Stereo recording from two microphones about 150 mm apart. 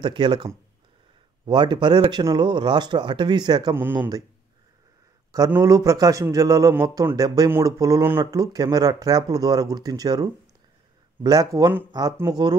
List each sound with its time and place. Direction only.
0.0 s speech: 30° right (ahead or behind)
5.5 s speech: 20° right (ahead or behind)